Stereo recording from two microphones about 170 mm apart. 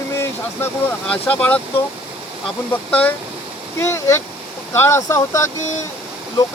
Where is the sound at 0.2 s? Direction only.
15° left (ahead or behind).